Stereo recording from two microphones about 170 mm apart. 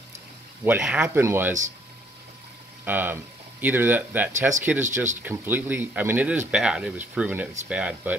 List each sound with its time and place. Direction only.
0.7 s speech: 5° right (ahead or behind)
2.8 s speech: 10° right (ahead or behind)